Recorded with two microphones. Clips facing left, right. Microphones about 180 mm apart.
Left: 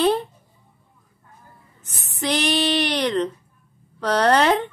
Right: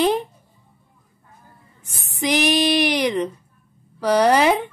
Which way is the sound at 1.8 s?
10° right (ahead or behind).